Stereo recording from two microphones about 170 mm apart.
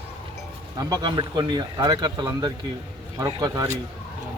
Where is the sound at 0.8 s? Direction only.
20° right (ahead or behind).